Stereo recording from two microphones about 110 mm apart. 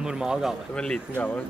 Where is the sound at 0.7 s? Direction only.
10° left (ahead or behind).